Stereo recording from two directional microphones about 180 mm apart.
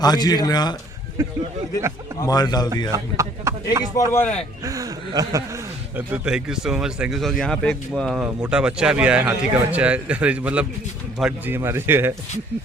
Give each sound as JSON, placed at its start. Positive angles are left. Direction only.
{"t": 0.0, "sound": "a man's voice", "side_deg": 20}
{"t": 1.2, "sound": "a man's voice", "side_deg": -15}
{"t": 2.2, "sound": "a man's voice", "side_deg": 20}
{"t": 2.9, "sound": "a man's voice", "side_deg": -15}
{"t": 4.1, "sound": "a man's voice", "side_deg": 10}
{"t": 4.6, "sound": "speech", "side_deg": -20}
{"t": 6.1, "sound": "a man's voice", "side_deg": -5}